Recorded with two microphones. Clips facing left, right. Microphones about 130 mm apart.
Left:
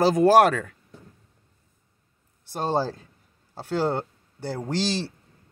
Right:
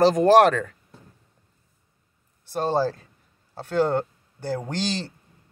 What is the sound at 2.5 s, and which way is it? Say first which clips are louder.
Speech: right 2 dB; 15° left (ahead or behind).